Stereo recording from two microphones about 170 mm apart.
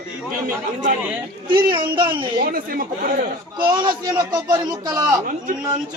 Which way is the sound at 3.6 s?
25° right (ahead or behind).